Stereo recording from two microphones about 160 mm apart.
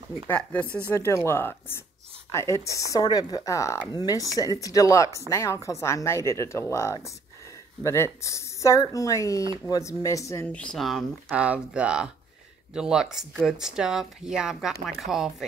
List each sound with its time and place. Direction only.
0.3 s speech: 10° left (ahead or behind)